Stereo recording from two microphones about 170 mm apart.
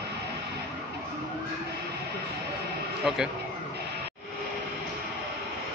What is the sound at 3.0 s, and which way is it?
Speech, 5° right (ahead or behind).